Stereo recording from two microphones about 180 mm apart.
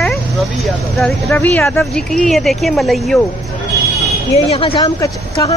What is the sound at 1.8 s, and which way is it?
Speech, centre (ahead or behind).